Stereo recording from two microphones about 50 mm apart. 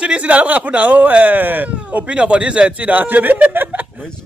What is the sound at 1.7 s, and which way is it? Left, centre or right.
Speech, right.